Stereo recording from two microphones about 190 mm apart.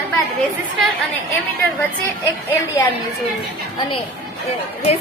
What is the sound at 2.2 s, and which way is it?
Speech, 10° left (ahead or behind).